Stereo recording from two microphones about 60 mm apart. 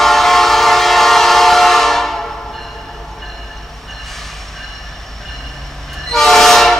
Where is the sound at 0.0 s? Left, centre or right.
Centre.